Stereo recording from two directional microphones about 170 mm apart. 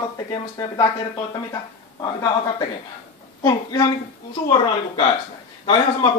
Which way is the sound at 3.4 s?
20° left (ahead or behind).